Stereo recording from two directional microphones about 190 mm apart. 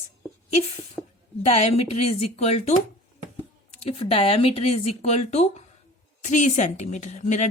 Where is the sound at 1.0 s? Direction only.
10° left (ahead or behind).